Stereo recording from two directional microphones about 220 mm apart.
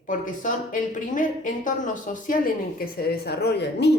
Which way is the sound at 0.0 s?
35° left (ahead or behind).